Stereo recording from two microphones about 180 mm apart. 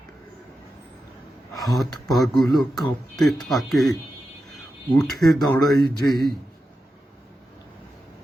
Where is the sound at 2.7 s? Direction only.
25° left (ahead or behind).